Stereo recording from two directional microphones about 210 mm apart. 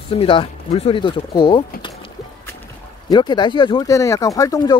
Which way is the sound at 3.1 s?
20° left (ahead or behind).